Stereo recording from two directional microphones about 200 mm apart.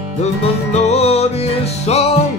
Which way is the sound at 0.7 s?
30° left (ahead or behind).